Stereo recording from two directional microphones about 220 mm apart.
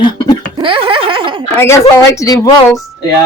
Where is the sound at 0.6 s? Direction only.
25° right (ahead or behind).